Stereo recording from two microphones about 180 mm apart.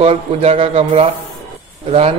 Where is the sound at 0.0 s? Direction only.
35° right (ahead or behind).